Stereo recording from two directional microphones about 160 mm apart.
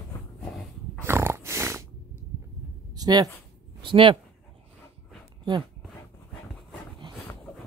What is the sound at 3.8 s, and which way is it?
Speech, 30° right (ahead or behind).